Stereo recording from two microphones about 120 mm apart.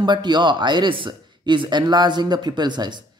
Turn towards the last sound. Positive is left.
turn(degrees=-40)  # may be behind; listen again after turning